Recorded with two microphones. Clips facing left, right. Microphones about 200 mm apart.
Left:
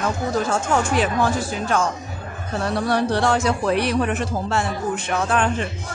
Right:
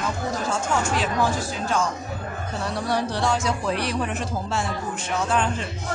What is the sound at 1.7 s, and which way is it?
A man's voice, 60° left (ahead or behind).